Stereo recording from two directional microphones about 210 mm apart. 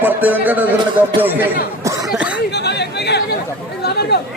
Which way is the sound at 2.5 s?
55° left (ahead or behind).